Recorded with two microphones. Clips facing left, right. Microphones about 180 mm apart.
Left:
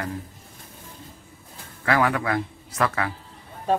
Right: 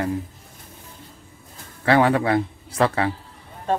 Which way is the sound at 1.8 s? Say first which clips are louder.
Right 5 dB; 30° right (ahead or behind).